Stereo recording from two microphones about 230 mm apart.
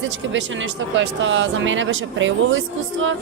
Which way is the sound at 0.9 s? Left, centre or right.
Right.